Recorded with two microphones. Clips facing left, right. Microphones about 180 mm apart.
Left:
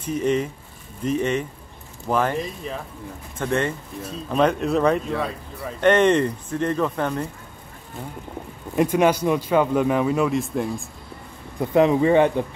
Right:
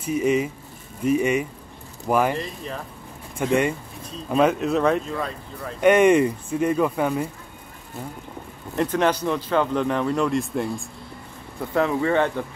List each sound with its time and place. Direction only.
0.0 s speech: 10° right (ahead or behind)
2.3 s speech: centre (ahead or behind)
3.4 s speech: 10° right (ahead or behind); by 5.8 s 5° left (ahead or behind)
5.8 s speech: 10° right (ahead or behind)
8.7 s speech: 10° left (ahead or behind)
11.7 s speech: 20° left (ahead or behind)